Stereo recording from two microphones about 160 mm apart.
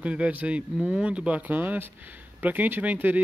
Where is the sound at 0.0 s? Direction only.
5° right (ahead or behind).